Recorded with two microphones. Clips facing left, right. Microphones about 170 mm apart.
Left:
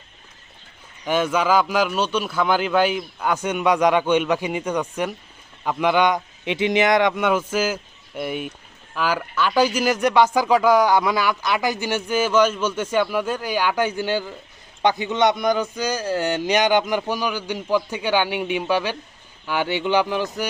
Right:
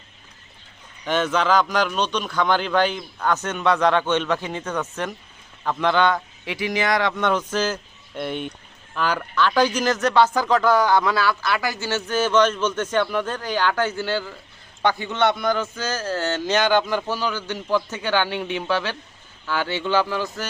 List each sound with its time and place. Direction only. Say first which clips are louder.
1.0 s a man's voice: left 1 dB; 10° left (ahead or behind)